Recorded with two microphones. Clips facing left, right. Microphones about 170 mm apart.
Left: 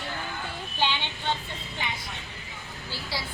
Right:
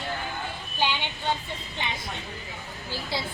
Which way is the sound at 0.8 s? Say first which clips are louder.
Right 1 dB; 15° right (ahead or behind).